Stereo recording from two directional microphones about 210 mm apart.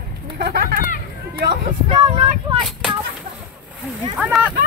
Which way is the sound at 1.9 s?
25° right (ahead or behind).